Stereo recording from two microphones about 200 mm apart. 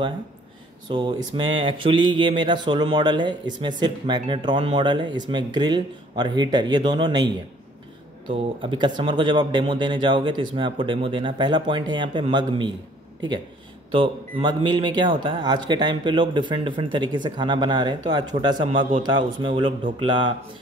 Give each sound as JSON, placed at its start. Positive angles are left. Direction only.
{"t": 0.8, "sound": "speech", "side_deg": -25}
{"t": 13.9, "sound": "speech", "side_deg": -25}